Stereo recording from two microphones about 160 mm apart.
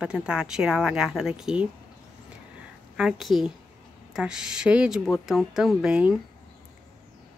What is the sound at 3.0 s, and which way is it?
Speech, 5° right (ahead or behind).